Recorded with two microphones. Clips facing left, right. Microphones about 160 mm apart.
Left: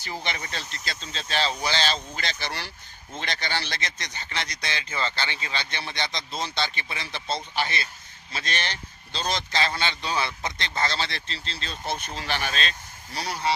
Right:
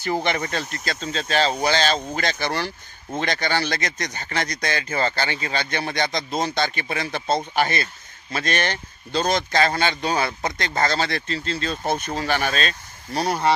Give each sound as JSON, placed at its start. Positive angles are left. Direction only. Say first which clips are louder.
{"t": 0.0, "sound": "speech", "louder": "right 10 dB", "side_deg": -50}